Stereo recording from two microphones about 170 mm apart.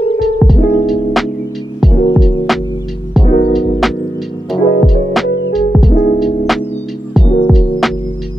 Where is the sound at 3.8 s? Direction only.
Centre (ahead or behind).